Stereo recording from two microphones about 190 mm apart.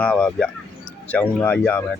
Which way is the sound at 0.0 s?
5° left (ahead or behind).